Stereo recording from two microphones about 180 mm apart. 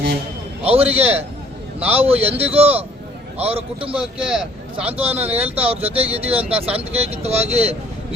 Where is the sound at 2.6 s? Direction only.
10° right (ahead or behind).